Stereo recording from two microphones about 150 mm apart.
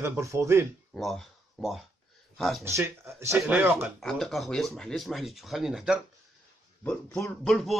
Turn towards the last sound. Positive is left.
turn(degrees=5)  # may be behind; listen again after turning